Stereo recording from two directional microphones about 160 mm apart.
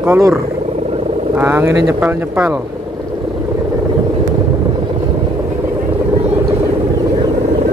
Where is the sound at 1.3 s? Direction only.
15° right (ahead or behind).